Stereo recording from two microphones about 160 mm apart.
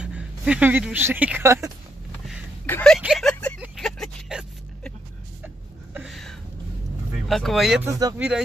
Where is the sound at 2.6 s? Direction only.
10° left (ahead or behind).